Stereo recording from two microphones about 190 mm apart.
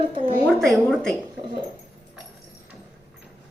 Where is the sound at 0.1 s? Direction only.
30° right (ahead or behind).